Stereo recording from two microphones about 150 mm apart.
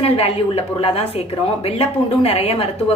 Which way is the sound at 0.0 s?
40° left (ahead or behind).